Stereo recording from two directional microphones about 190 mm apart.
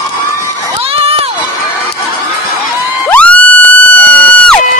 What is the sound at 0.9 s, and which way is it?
Crowd, 30° right (ahead or behind).